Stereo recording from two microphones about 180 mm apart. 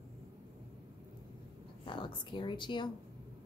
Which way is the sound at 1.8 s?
25° left (ahead or behind).